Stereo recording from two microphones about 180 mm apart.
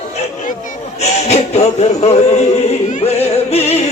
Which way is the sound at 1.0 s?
35° left (ahead or behind).